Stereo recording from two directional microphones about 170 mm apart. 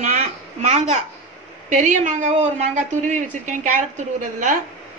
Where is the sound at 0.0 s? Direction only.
40° right (ahead or behind).